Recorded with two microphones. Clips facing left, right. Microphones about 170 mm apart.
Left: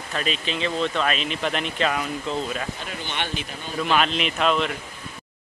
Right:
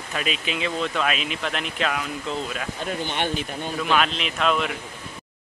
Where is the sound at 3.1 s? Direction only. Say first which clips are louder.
Right 2 dB; 40° right (ahead or behind).